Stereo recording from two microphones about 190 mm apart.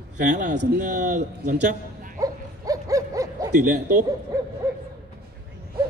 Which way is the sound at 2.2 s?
20° right (ahead or behind).